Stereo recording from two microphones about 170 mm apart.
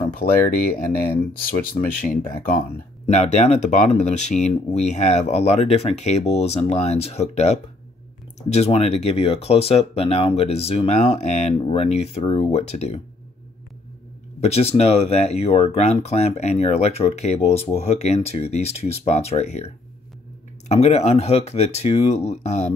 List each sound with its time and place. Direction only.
0.0 s speech: 60° left (ahead or behind)
3.1 s speech: 40° left (ahead or behind)
14.4 s speech: 40° left (ahead or behind)